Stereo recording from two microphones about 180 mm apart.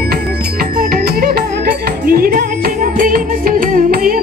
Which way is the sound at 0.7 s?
55° right (ahead or behind).